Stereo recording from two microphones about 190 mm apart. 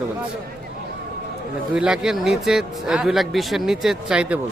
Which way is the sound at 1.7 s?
5° right (ahead or behind).